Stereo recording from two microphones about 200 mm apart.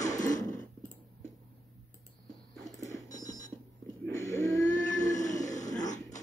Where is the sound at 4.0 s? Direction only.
15° left (ahead or behind).